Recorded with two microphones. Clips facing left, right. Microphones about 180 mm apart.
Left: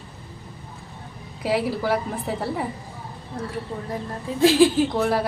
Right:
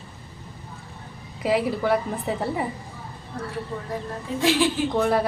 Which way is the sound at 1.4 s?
Centre (ahead or behind).